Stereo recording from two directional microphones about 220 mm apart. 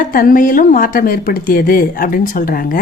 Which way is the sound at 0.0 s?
40° left (ahead or behind).